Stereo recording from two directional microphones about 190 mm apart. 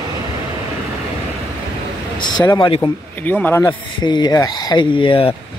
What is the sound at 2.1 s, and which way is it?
Speech, 20° left (ahead or behind).